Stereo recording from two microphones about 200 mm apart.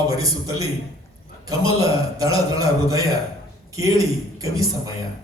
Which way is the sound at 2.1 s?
15° right (ahead or behind).